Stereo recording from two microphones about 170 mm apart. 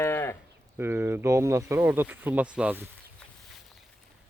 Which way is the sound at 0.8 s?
15° right (ahead or behind).